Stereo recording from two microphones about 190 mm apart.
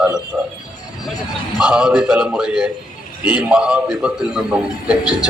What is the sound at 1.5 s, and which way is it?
A man's voice, 5° right (ahead or behind).